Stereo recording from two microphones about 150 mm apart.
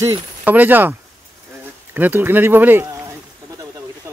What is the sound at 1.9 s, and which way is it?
Speech, 15° right (ahead or behind).